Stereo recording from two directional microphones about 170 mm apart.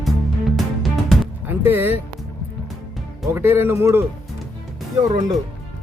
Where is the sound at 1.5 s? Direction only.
10° right (ahead or behind).